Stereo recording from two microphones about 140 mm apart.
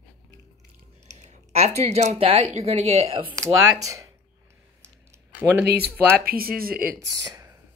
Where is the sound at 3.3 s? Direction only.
20° right (ahead or behind).